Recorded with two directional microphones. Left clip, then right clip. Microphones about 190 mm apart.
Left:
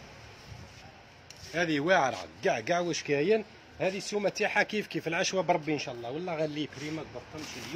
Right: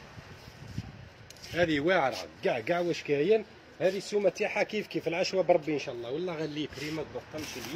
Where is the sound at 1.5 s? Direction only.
45° left (ahead or behind).